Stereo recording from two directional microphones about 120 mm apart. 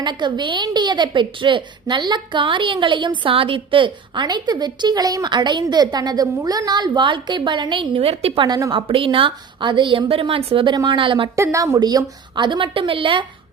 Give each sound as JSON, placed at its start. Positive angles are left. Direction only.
{"t": 0.0, "sound": "a woman's voice", "side_deg": -40}
{"t": 8.4, "sound": "a woman's voice", "side_deg": -30}
{"t": 8.7, "sound": "a woman's voice", "side_deg": -45}
{"t": 11.3, "sound": "a woman's voice", "side_deg": -25}